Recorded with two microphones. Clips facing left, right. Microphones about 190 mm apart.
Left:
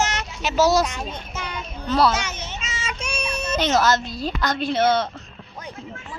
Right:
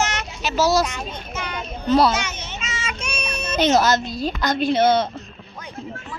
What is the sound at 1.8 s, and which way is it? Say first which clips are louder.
Speech: right 3 dB; 20° right (ahead or behind).